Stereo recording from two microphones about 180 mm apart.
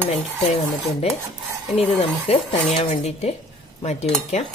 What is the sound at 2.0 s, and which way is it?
Speech, 35° left (ahead or behind).